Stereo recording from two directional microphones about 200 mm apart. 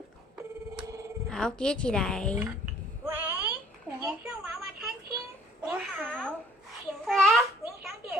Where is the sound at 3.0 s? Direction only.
10° right (ahead or behind).